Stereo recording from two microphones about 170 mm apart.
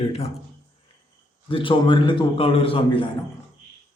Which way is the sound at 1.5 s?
30° left (ahead or behind).